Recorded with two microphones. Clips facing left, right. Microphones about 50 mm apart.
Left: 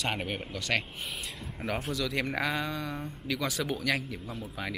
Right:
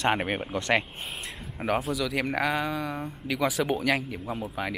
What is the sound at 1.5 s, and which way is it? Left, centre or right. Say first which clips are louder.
Speech: right 7 dB; centre.